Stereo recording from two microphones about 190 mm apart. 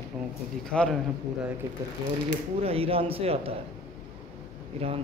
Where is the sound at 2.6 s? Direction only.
30° right (ahead or behind).